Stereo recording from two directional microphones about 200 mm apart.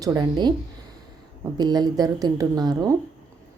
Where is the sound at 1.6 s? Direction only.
20° right (ahead or behind).